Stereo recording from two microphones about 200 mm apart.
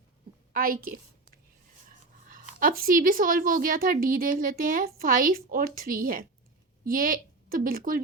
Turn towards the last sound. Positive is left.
turn(degrees=-45)  # may be behind; listen again after turning